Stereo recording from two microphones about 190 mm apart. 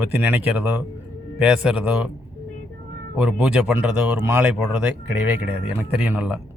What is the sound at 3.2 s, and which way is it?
Speech, 5° right (ahead or behind).